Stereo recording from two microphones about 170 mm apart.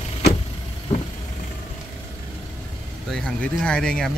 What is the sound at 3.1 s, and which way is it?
Speech, 5° left (ahead or behind).